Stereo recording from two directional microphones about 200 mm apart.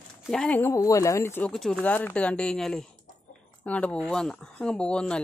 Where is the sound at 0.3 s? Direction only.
5° left (ahead or behind).